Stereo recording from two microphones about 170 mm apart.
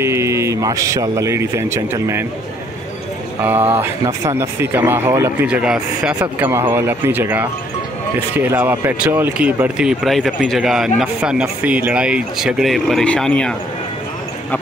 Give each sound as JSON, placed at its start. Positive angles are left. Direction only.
{"t": 0.0, "sound": "a man's voice", "side_deg": -15}
{"t": 3.4, "sound": "a man's voice", "side_deg": -15}